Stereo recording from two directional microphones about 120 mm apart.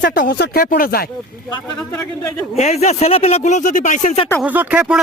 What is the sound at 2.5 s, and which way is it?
Speech, 65° left (ahead or behind).